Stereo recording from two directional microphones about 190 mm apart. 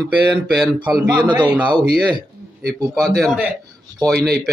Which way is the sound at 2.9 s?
Centre (ahead or behind).